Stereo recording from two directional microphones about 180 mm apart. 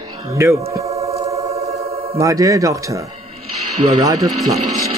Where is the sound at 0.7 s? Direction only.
15° right (ahead or behind).